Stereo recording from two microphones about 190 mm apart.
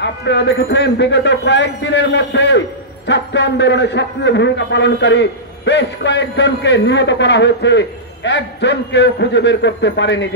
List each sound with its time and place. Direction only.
0.0 s a man's voice: 65° left (ahead or behind)